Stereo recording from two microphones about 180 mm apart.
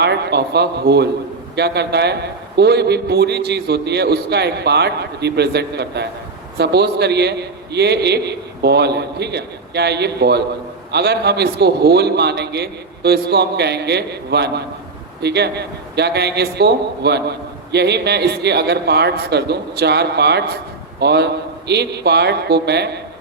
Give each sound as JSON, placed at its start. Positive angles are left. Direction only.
{"t": 0.0, "sound": "a man's voice", "side_deg": -65}